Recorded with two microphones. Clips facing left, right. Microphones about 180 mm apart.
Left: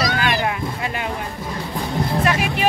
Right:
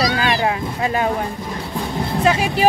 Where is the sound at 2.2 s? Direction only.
30° right (ahead or behind).